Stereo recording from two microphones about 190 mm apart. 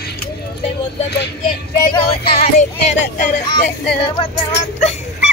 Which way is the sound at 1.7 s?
25° left (ahead or behind).